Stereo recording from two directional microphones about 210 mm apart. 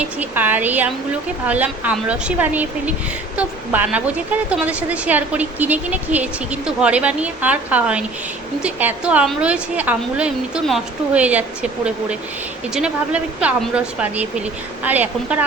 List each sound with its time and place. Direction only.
0.0 s a woman's voice: 10° right (ahead or behind)